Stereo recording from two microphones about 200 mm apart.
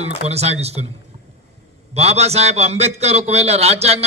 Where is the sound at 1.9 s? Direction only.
30° right (ahead or behind).